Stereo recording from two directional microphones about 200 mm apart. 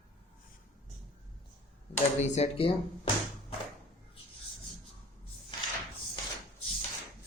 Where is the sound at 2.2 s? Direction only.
35° left (ahead or behind).